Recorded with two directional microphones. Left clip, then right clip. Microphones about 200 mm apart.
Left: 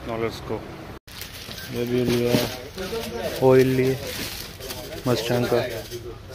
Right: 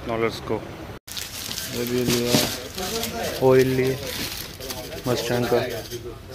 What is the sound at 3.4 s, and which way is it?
Speech, 15° left (ahead or behind).